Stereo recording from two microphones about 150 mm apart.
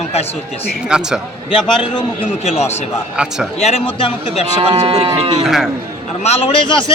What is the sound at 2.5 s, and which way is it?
Speech, 45° left (ahead or behind).